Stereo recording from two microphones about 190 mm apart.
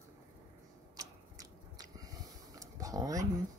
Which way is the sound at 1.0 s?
20° right (ahead or behind).